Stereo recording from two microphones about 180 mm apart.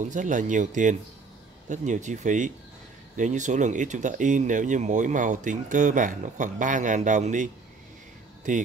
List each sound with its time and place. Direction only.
0.0 s speech: 45° right (ahead or behind)